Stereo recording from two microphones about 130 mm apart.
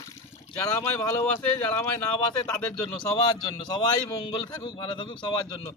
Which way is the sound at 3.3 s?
35° left (ahead or behind).